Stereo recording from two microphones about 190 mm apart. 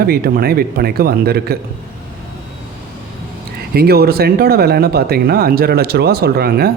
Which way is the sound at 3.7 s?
55° right (ahead or behind).